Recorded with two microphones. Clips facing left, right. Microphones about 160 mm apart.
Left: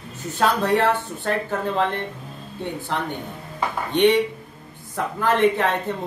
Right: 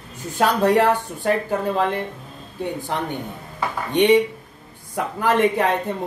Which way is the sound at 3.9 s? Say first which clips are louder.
Right 2 dB; 15° right (ahead or behind).